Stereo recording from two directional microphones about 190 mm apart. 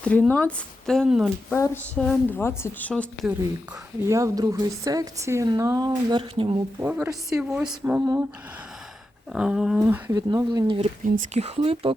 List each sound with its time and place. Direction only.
0.0 s speech: 5° left (ahead or behind)
1.5 s a woman's voice: 10° left (ahead or behind)
4.0 s a woman's voice: 15° right (ahead or behind)
6.7 s a woman's voice: 10° right (ahead or behind)
7.3 s speech: 5° right (ahead or behind)
9.3 s speech: 5° right (ahead or behind)
9.8 s a woman's voice: 15° right (ahead or behind)
10.8 s speech: 35° right (ahead or behind)